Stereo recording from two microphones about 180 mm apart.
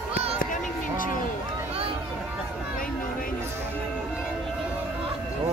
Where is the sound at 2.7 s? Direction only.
50° left (ahead or behind).